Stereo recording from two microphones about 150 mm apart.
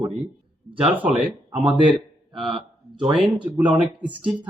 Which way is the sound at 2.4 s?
30° right (ahead or behind).